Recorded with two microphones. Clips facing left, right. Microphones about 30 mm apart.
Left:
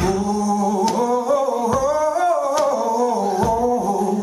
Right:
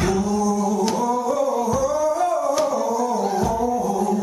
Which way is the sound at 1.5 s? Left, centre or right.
Centre.